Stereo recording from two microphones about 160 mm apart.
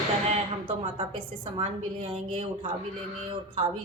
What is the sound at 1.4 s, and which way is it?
Speech, 45° right (ahead or behind).